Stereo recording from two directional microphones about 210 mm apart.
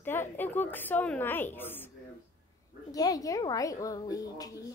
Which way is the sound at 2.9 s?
15° left (ahead or behind).